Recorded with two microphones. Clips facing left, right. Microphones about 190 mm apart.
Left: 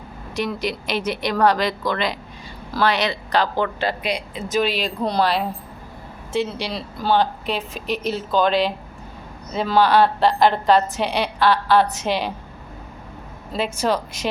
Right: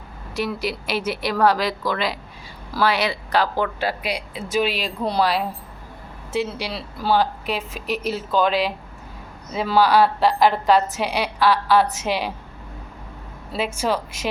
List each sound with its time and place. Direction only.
0.3 s a woman's voice: 5° right (ahead or behind)
13.7 s speech: 5° right (ahead or behind)